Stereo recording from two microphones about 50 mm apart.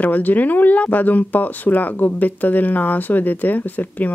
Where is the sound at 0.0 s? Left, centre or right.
Left.